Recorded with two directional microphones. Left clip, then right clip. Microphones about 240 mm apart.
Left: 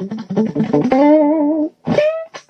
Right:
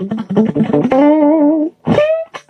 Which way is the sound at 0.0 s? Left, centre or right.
Right.